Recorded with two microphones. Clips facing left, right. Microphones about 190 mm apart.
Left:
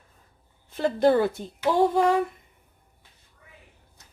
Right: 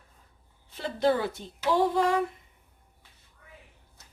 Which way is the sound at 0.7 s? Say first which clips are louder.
Left 5 dB; 50° left (ahead or behind).